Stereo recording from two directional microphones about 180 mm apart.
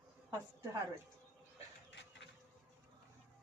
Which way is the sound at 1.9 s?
85° left.